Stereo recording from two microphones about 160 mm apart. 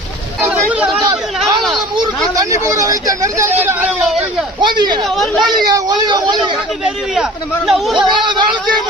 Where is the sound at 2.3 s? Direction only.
20° right (ahead or behind); by 4.2 s 5° right (ahead or behind).